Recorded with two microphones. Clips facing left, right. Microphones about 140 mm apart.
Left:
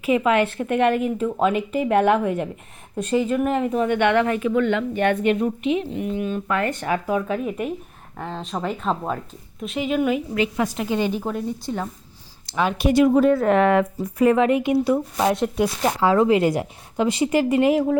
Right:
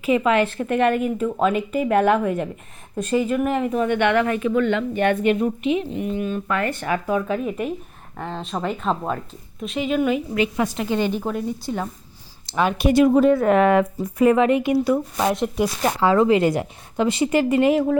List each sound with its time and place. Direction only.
0.1 s a woman's voice: 10° left (ahead or behind); by 3.8 s 30° left (ahead or behind)
3.8 s a woman's voice: 15° left (ahead or behind)
4.8 s a woman's voice: centre (ahead or behind)
6.1 s speech: 20° left (ahead or behind)
7.3 s a woman's voice: 5° left (ahead or behind)
10.3 s speech: 10° right (ahead or behind)
10.8 s a woman's voice: 5° left (ahead or behind); by 11.9 s 10° right (ahead or behind)
12.5 s speech: 55° right (ahead or behind)
13.1 s speech: 20° right (ahead or behind)
13.4 s speech: 10° right (ahead or behind)
14.3 s a woman's voice: centre (ahead or behind)
14.6 s speech: 25° left (ahead or behind)
16.0 s a woman's voice: 5° left (ahead or behind)